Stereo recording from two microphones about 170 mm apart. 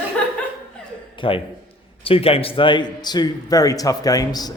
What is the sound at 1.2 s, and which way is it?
A man's voice, 30° left (ahead or behind).